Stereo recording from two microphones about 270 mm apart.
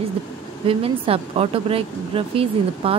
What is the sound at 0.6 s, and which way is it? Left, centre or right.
Speech, right.